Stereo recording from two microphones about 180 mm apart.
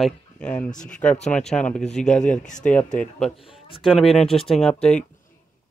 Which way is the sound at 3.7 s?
30° left (ahead or behind).